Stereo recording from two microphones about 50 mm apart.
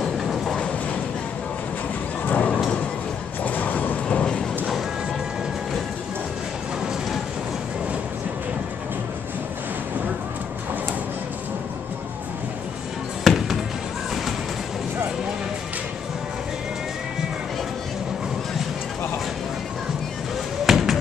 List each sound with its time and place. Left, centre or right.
0.0 s train: centre
2.2 s a sound: left
3.4 s vehicle: left
13.2 s music: centre
20.6 s basketball bounce: centre